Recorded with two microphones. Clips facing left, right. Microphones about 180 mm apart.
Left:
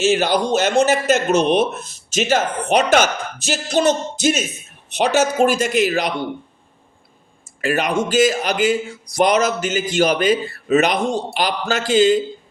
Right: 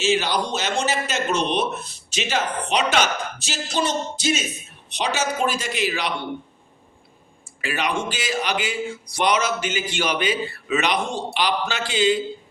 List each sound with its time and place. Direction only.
0.0 s speech: 50° left (ahead or behind)
7.6 s speech: 45° left (ahead or behind)